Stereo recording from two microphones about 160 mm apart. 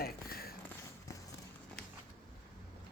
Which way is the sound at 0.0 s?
70° left (ahead or behind).